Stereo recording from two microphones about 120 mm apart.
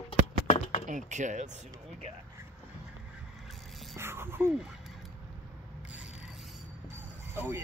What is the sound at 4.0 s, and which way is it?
Speech, 20° right (ahead or behind).